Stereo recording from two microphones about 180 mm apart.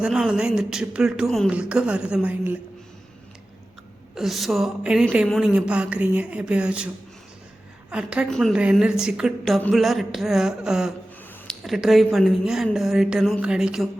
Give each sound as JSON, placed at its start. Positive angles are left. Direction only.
{"t": 0.0, "sound": "a woman's voice", "side_deg": -5}
{"t": 4.1, "sound": "a woman's voice", "side_deg": 0}